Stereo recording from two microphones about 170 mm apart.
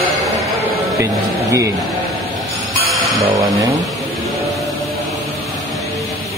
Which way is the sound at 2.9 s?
Centre (ahead or behind).